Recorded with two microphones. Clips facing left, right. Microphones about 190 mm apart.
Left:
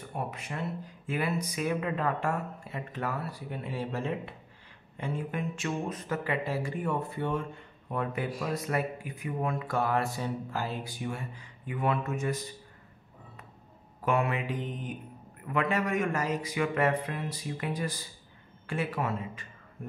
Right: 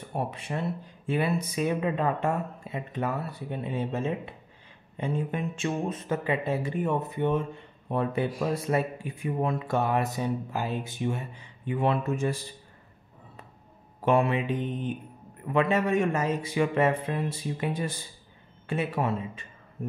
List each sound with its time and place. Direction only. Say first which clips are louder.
0.1 s speech: right 5 dB; 30° right (ahead or behind)
7.9 s speech: right 5 dB; 30° right (ahead or behind)
14.0 s speech: right 5 dB; 30° right (ahead or behind)